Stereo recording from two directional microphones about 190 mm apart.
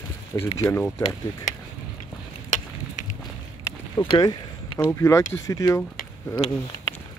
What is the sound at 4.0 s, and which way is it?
Speech, 25° left (ahead or behind).